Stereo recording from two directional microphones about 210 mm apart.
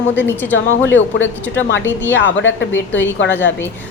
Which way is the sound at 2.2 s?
60° left (ahead or behind).